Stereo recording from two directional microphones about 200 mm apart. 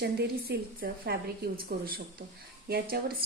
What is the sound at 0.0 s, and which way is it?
A woman's voice, 50° right (ahead or behind).